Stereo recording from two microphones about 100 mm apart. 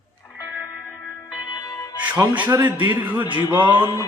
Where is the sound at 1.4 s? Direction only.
45° left (ahead or behind).